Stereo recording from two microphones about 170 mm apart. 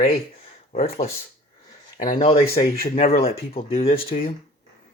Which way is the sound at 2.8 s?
35° left (ahead or behind).